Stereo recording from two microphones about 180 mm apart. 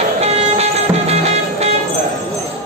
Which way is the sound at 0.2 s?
35° right (ahead or behind).